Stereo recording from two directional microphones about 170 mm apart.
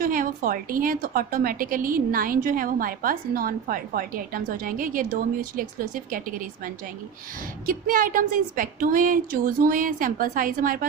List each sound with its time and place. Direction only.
0.0 s a woman's voice: 55° right (ahead or behind)
7.6 s a woman's voice: 55° right (ahead or behind)